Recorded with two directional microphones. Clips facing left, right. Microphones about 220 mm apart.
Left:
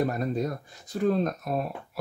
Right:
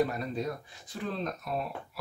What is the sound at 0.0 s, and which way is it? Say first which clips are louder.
Speech: left 3 dB; 45° left (ahead or behind).